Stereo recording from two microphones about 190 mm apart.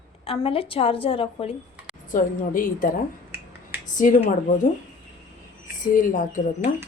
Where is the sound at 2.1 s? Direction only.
45° left (ahead or behind).